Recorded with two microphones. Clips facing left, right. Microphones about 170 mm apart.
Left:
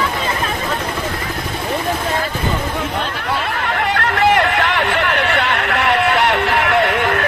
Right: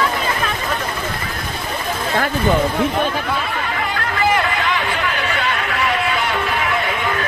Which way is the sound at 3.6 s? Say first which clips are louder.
Left 4 dB; 60° left (ahead or behind).